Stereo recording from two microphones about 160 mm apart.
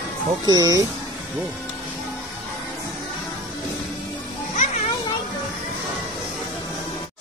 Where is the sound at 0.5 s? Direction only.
20° right (ahead or behind).